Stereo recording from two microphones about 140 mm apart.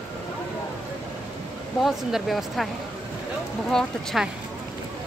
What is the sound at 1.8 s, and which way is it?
Speech, centre (ahead or behind).